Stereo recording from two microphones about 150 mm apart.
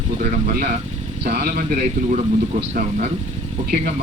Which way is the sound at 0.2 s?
55° right (ahead or behind).